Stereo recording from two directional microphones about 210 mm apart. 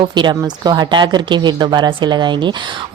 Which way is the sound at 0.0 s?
20° right (ahead or behind).